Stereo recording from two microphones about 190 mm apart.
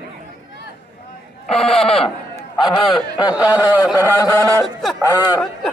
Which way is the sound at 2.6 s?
25° left (ahead or behind).